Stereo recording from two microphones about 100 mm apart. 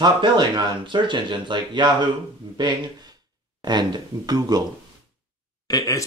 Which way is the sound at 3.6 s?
45° right (ahead or behind).